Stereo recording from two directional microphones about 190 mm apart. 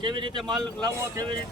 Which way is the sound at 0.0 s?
25° right (ahead or behind).